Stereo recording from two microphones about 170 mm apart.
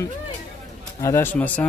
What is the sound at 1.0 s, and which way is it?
Speech, 15° left (ahead or behind).